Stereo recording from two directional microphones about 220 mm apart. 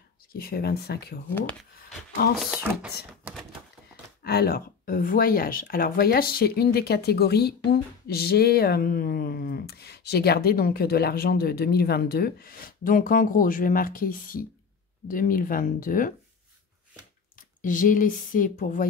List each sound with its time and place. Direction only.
0.3 s speech: 45° left (ahead or behind)
1.3 s speech: 5° left (ahead or behind)
4.2 s speech: 45° left (ahead or behind)
17.4 s speech: 35° left (ahead or behind)